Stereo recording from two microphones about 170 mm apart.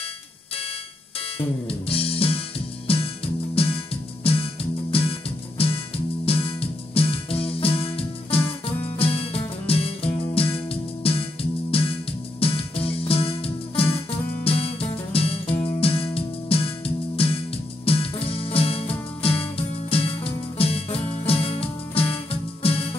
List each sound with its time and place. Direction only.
1.7 s music: 35° left (ahead or behind)
3.5 s music: 35° left (ahead or behind)